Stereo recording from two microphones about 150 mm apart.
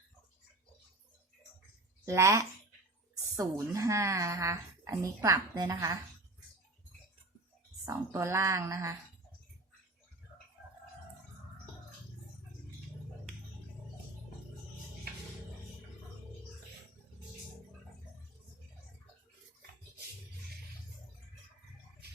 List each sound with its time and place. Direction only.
2.0 s a woman's voice: 20° right (ahead or behind)
7.9 s a woman's voice: 20° right (ahead or behind)